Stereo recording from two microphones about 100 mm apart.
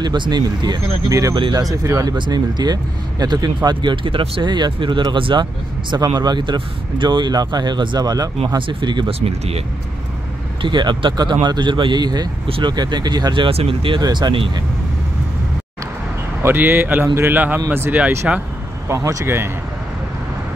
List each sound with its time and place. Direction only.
0.0 s speech: 45° right (ahead or behind)
1.3 s speech: 55° right (ahead or behind)
1.6 s speech: 35° right (ahead or behind)
8.5 s speech: 55° right (ahead or behind)
9.2 s speech: 90° right
10.6 s speech: 50° right (ahead or behind)
12.4 s speech: 65° right (ahead or behind)
12.7 s speech: 45° right (ahead or behind); by 14.0 s 60° right (ahead or behind)
14.0 s speech: 45° right (ahead or behind)
16.4 s speech: 20° right (ahead or behind)
18.9 s speech: 30° right (ahead or behind)